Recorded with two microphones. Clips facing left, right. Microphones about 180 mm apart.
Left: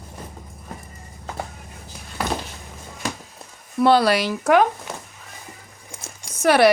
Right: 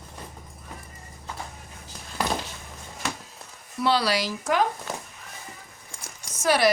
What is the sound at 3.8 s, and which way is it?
Speech, 50° left (ahead or behind).